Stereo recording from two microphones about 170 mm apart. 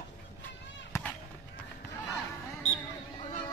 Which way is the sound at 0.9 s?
15° left (ahead or behind).